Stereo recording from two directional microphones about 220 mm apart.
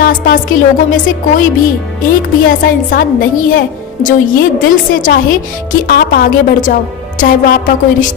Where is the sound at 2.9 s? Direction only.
40° left (ahead or behind).